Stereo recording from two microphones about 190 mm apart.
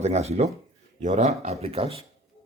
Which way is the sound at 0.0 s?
35° right (ahead or behind).